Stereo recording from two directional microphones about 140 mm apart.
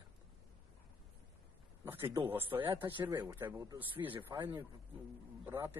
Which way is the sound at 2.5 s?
25° right (ahead or behind).